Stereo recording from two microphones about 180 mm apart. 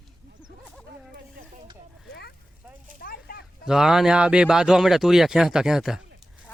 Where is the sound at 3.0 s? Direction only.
55° left (ahead or behind).